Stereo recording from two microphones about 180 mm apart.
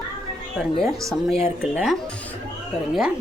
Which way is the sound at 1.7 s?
Centre (ahead or behind).